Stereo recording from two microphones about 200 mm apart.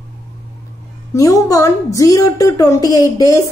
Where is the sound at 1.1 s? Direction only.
15° left (ahead or behind).